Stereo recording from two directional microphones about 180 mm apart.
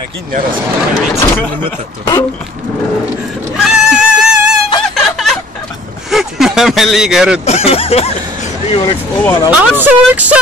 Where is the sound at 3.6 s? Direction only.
5° right (ahead or behind).